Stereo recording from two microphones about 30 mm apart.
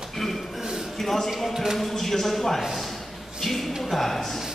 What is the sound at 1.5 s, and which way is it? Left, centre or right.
Speech, centre.